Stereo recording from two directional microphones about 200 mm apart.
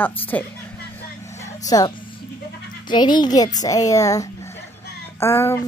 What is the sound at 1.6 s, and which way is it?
Speech, 15° left (ahead or behind).